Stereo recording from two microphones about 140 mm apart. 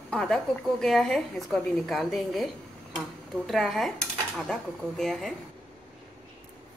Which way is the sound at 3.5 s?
Centre (ahead or behind).